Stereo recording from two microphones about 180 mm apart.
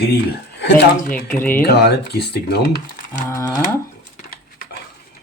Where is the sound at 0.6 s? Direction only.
60° left (ahead or behind).